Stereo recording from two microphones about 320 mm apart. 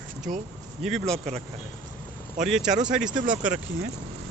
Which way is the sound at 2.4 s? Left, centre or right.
Centre.